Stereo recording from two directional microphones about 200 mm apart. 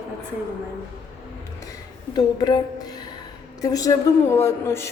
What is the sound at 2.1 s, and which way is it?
Speech, 20° left (ahead or behind).